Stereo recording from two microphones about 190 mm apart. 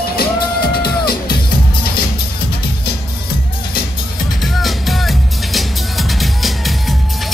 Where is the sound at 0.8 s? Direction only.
55° left (ahead or behind).